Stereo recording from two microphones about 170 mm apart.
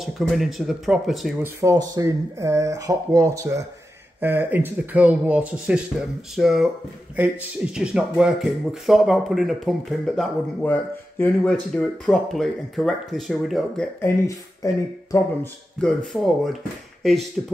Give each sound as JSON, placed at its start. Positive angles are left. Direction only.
{"t": 0.0, "sound": "speech", "side_deg": 0}
{"t": 1.4, "sound": "speech", "side_deg": -15}
{"t": 14.0, "sound": "speech", "side_deg": 20}
{"t": 15.8, "sound": "speech", "side_deg": 5}
{"t": 17.4, "sound": "speech", "side_deg": 5}